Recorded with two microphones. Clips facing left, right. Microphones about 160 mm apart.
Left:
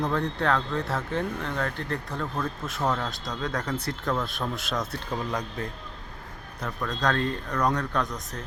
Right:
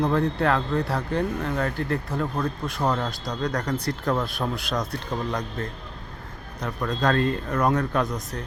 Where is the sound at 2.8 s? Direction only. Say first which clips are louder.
Right 2 dB; 20° right (ahead or behind).